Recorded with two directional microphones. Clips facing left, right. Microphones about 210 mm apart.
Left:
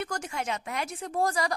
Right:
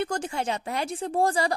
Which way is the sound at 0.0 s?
30° right (ahead or behind).